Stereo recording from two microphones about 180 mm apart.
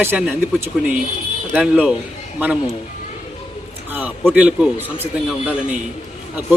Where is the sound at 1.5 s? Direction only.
5° right (ahead or behind).